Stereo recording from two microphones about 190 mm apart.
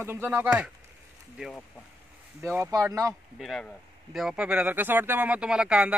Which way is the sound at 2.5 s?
15° right (ahead or behind).